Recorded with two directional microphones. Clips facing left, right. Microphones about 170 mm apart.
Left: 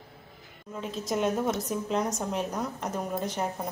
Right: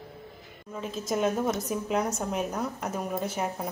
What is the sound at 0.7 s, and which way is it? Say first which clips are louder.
A woman's voice: right 1 dB; centre (ahead or behind).